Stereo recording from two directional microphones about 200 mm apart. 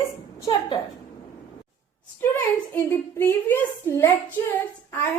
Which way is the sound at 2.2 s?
10° left (ahead or behind).